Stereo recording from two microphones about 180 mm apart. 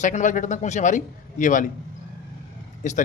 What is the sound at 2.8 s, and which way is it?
Speech, 45° left (ahead or behind).